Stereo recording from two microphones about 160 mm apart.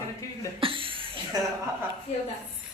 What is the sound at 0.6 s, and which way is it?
Speech, 35° right (ahead or behind).